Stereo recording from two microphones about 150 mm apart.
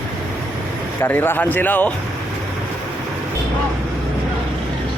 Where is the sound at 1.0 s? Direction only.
15° left (ahead or behind).